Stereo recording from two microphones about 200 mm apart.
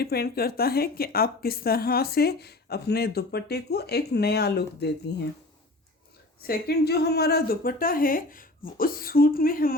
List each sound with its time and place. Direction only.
0.0 s speech: 50° left (ahead or behind)
6.4 s speech: 50° left (ahead or behind)